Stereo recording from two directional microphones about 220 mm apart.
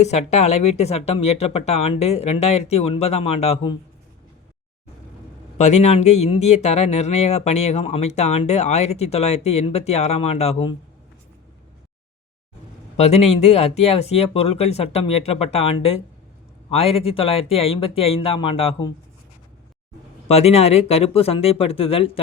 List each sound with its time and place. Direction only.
0.0 s speech: 30° left (ahead or behind)
5.5 s speech: 30° left (ahead or behind)
13.0 s speech: 30° left (ahead or behind)
20.2 s speech: 30° left (ahead or behind)